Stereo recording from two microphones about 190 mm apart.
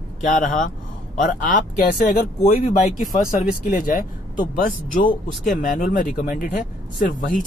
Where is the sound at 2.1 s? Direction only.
40° left (ahead or behind).